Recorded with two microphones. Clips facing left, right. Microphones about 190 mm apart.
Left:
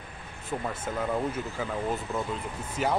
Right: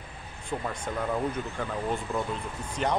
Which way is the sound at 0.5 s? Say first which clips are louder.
Even; 5° left (ahead or behind).